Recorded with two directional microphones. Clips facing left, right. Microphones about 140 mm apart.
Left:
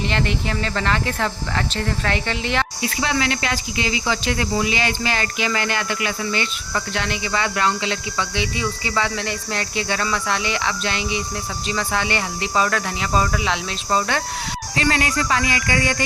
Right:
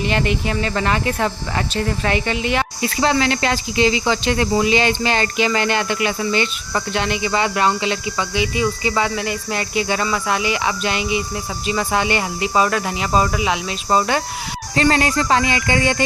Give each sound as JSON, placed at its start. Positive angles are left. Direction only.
{"t": 0.0, "sound": "speech", "side_deg": -15}
{"t": 2.8, "sound": "speech", "side_deg": -35}
{"t": 14.8, "sound": "speech", "side_deg": -35}